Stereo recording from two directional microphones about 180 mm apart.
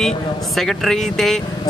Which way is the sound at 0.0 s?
Centre (ahead or behind).